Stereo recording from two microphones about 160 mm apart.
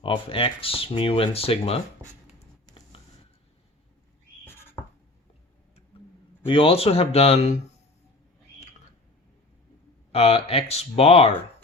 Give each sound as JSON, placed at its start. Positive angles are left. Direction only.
{"t": 0.0, "sound": "speech", "side_deg": 35}
{"t": 6.4, "sound": "speech", "side_deg": 35}
{"t": 10.1, "sound": "speech", "side_deg": 40}